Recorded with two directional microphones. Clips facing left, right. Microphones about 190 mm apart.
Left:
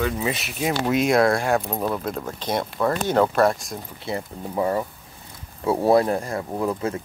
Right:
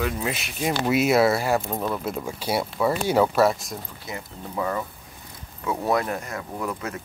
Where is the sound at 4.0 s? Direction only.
30° left (ahead or behind).